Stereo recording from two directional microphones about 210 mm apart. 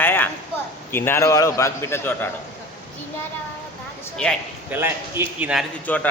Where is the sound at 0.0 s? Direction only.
10° left (ahead or behind).